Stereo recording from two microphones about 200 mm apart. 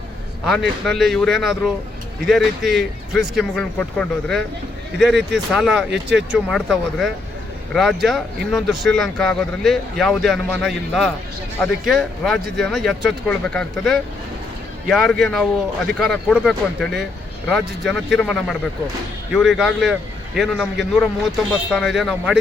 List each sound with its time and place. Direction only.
0.9 s speech: centre (ahead or behind)
5.9 s speech: 60° right (ahead or behind)
6.3 s speech: centre (ahead or behind)